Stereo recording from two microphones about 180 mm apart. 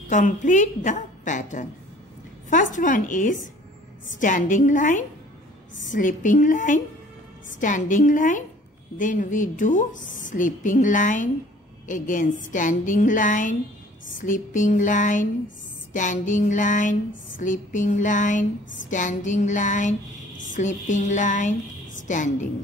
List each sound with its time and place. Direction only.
0.1 s speech: 45° left (ahead or behind)